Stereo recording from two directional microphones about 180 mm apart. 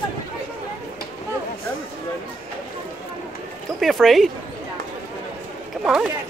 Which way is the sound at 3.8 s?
Centre (ahead or behind).